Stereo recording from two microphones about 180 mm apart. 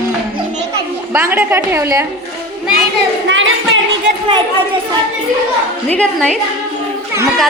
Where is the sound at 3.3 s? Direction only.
90° right.